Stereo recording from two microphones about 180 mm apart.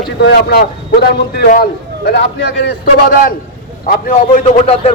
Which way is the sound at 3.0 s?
50° left (ahead or behind).